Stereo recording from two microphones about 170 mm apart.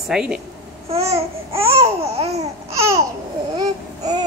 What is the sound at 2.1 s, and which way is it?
Babbling, 35° right (ahead or behind).